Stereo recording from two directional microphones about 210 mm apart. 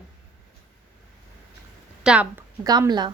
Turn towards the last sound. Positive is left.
turn(degrees=-20)  # may be behind; listen again after turning